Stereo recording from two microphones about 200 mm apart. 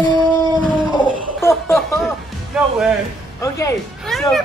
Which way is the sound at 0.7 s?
25° right (ahead or behind).